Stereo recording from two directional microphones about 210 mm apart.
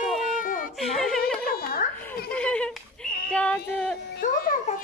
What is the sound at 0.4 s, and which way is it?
Baby cry, 40° left (ahead or behind).